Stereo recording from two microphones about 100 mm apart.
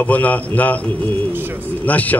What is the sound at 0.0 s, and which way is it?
Speech, 15° left (ahead or behind).